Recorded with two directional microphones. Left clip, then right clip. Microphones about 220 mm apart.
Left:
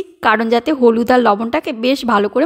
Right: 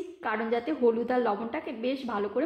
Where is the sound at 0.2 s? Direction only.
50° left (ahead or behind).